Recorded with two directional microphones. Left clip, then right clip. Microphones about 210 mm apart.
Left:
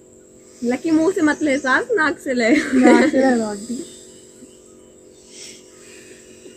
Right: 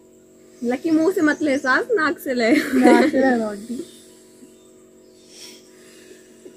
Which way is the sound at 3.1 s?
15° left (ahead or behind).